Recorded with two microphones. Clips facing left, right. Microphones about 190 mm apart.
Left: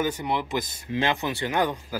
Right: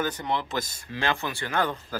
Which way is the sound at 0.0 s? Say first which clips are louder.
Left 2 dB; 10° left (ahead or behind).